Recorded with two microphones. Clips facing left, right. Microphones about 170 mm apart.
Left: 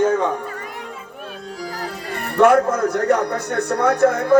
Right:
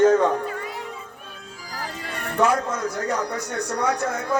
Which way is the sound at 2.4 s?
60° left (ahead or behind).